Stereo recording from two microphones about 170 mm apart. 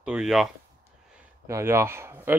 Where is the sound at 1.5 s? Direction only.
15° right (ahead or behind).